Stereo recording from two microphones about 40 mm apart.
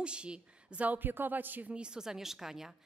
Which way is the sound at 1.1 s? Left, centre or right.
Right.